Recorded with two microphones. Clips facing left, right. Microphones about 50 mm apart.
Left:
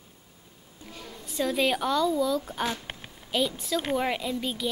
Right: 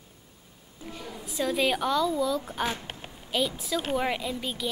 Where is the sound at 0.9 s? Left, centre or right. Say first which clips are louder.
Right 4 dB; centre.